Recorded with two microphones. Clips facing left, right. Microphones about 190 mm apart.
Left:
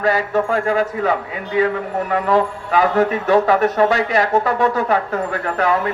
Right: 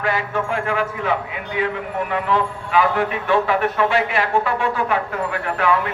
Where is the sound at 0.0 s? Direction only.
40° left (ahead or behind).